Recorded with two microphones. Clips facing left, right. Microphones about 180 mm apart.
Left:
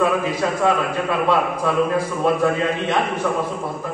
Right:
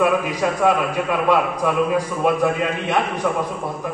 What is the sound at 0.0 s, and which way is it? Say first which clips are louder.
A man's voice: right 1 dB; 15° right (ahead or behind).